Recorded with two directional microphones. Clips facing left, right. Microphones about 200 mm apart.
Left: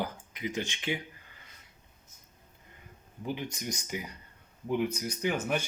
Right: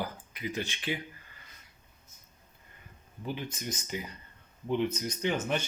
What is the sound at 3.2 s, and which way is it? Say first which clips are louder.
Speech: left 1 dB; 15° left (ahead or behind).